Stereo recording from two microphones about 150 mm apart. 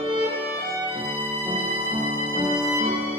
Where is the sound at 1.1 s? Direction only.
15° right (ahead or behind).